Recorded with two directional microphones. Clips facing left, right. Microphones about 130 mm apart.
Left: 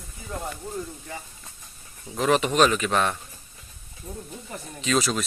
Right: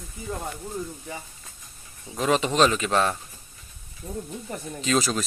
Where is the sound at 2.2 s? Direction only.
20° right (ahead or behind).